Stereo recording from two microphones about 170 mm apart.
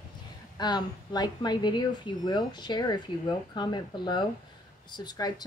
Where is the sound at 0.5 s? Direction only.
25° left (ahead or behind).